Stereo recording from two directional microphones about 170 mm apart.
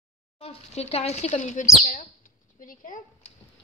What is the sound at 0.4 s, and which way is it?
Speech, 35° left (ahead or behind).